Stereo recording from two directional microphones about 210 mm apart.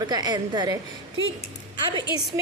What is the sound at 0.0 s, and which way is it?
Speech, 20° right (ahead or behind).